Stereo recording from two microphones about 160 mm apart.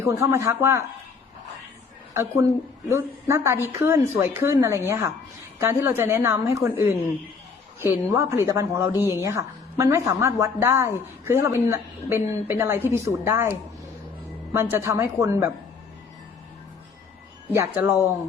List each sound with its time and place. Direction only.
0.0 s a woman's voice: 15° right (ahead or behind)
2.1 s a woman's voice: 20° right (ahead or behind)
14.5 s a woman's voice: 15° right (ahead or behind)
17.5 s a woman's voice: 15° right (ahead or behind)